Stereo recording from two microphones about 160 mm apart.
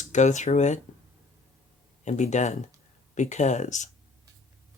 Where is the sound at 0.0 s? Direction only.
50° left (ahead or behind).